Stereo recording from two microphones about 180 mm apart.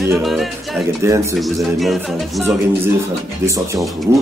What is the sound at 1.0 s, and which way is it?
Speech, 15° right (ahead or behind).